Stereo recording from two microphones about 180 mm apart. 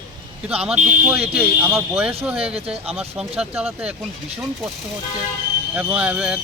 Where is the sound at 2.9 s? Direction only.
35° right (ahead or behind).